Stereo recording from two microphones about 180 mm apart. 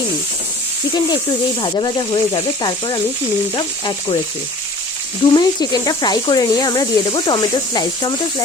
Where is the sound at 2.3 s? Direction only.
25° left (ahead or behind).